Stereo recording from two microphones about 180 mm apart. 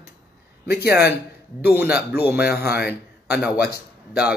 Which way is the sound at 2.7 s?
65° left (ahead or behind).